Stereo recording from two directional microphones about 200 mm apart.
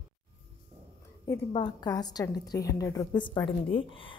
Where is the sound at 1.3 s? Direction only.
20° left (ahead or behind).